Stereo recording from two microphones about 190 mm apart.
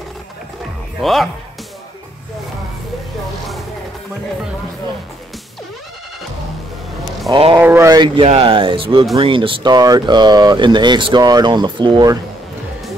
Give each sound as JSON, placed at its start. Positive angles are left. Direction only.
{"t": 1.0, "sound": "speech", "side_deg": 0}
{"t": 7.2, "sound": "speech", "side_deg": -30}
{"t": 7.5, "sound": "speech", "side_deg": -15}